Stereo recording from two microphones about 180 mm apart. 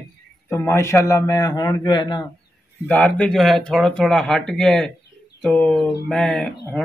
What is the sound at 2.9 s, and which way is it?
Speech, 5° left (ahead or behind).